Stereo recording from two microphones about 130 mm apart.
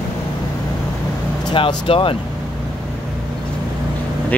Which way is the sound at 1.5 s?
40° left (ahead or behind).